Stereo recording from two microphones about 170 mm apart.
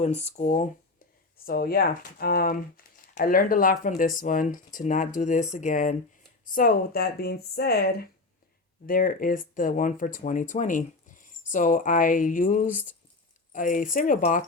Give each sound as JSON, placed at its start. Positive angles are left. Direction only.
{"t": 0.0, "sound": "speech", "side_deg": 40}
{"t": 1.5, "sound": "speech", "side_deg": 60}
{"t": 6.5, "sound": "speech", "side_deg": 60}